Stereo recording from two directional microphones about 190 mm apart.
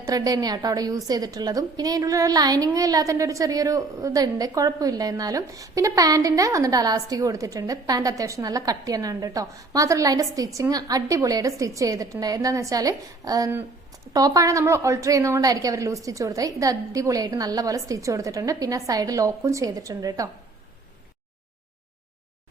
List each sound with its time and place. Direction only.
0.0 s a woman's voice: 20° right (ahead or behind)